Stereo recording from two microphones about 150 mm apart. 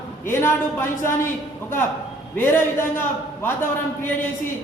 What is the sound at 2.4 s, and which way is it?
A man's voice, 15° left (ahead or behind).